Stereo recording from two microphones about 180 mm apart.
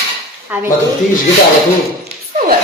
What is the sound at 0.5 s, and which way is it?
Speech, 10° right (ahead or behind).